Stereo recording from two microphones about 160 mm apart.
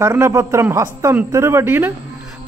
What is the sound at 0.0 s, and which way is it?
A man's voice, 15° right (ahead or behind).